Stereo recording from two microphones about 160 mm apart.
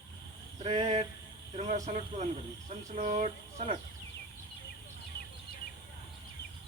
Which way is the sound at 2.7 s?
40° right (ahead or behind).